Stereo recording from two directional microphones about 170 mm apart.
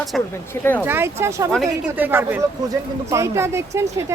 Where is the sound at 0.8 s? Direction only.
15° right (ahead or behind).